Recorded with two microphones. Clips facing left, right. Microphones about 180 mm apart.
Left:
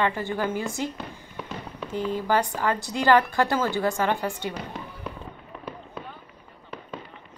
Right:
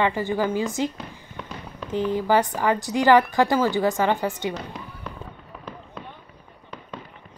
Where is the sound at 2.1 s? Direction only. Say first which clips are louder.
Right 3 dB; 15° right (ahead or behind).